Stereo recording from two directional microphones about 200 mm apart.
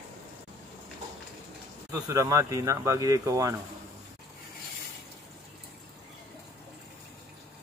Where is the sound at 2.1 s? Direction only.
15° right (ahead or behind).